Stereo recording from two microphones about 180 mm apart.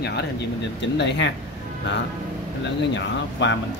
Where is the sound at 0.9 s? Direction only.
80° left.